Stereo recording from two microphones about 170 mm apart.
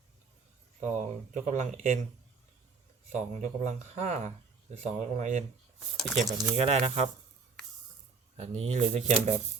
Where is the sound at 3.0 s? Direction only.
45° right (ahead or behind).